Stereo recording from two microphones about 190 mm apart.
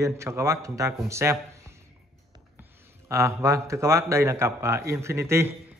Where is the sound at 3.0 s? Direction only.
15° right (ahead or behind).